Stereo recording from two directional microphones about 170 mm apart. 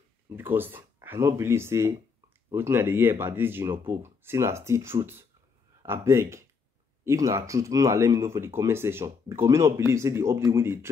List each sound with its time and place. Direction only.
0.4 s speech: 10° right (ahead or behind)